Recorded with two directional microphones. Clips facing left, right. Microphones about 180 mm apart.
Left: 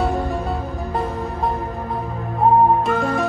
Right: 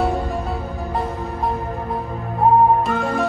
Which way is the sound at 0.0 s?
Centre (ahead or behind).